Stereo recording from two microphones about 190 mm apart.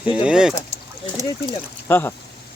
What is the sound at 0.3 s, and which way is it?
Speech, 5° right (ahead or behind).